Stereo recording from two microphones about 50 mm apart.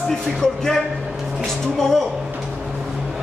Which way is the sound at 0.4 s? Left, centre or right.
Centre.